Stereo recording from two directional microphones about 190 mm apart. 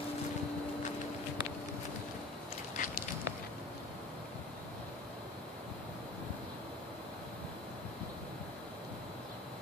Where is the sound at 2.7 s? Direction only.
45° left (ahead or behind).